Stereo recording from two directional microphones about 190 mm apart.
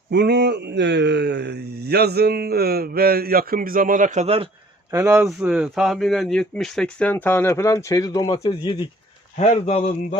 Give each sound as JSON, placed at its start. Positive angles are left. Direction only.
{"t": 0.1, "sound": "speech", "side_deg": -65}
{"t": 4.9, "sound": "speech", "side_deg": -15}
{"t": 5.2, "sound": "speech", "side_deg": -5}
{"t": 9.4, "sound": "a man's voice", "side_deg": 35}